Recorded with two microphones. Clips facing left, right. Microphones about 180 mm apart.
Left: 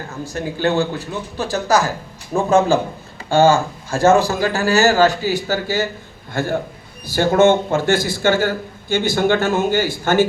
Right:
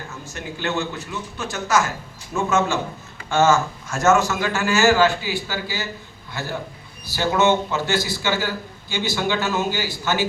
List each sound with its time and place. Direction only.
0.3 s a man's voice: 35° left (ahead or behind); by 10.2 s 50° left (ahead or behind)